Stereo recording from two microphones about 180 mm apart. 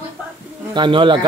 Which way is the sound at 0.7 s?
25° right (ahead or behind).